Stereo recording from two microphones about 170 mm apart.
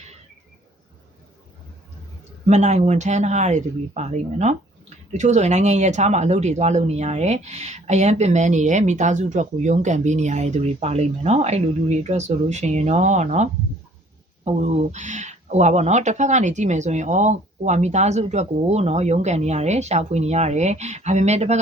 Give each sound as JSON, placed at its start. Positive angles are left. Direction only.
{"t": 2.5, "sound": "speech", "side_deg": -40}